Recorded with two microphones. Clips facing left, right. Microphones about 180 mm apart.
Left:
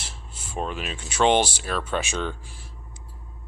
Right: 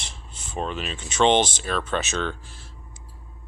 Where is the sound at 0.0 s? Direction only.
5° left (ahead or behind).